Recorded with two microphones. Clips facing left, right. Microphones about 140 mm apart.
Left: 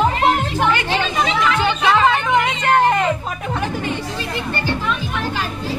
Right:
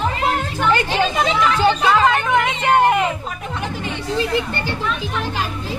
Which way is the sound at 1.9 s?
Centre (ahead or behind).